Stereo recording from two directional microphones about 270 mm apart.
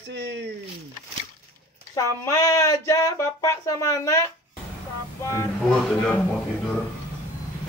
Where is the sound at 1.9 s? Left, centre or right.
Centre.